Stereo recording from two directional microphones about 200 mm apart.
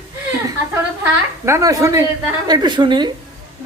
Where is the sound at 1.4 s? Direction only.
15° right (ahead or behind).